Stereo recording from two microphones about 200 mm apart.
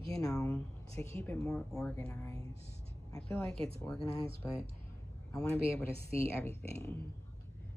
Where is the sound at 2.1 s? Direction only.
15° left (ahead or behind).